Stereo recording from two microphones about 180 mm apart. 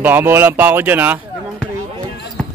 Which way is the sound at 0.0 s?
10° right (ahead or behind).